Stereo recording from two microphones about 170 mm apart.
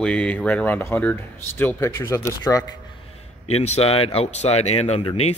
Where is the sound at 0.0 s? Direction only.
10° left (ahead or behind).